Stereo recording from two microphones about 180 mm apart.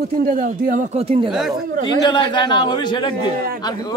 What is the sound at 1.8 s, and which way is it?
A man's voice, 25° left (ahead or behind).